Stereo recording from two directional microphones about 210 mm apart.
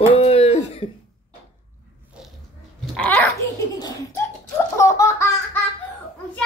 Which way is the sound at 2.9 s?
5° left (ahead or behind).